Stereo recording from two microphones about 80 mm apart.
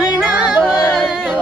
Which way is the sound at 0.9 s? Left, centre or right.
Centre.